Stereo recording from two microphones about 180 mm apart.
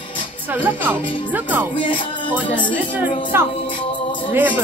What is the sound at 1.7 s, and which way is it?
Music, 30° left (ahead or behind).